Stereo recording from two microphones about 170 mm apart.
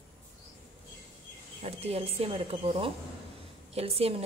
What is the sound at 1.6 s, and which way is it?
A woman's voice, 35° right (ahead or behind).